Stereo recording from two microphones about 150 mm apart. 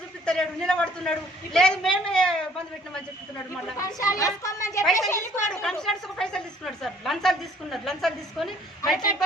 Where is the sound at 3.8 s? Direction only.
20° left (ahead or behind).